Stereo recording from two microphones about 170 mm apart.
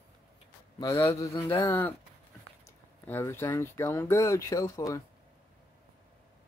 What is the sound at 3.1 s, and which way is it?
Speech, 15° left (ahead or behind).